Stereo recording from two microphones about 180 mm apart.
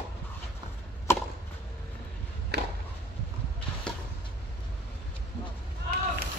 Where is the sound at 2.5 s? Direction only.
65° right (ahead or behind).